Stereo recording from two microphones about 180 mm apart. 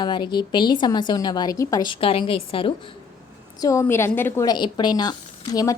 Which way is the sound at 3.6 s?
15° left (ahead or behind).